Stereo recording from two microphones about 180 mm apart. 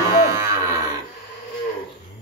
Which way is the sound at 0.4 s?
15° right (ahead or behind).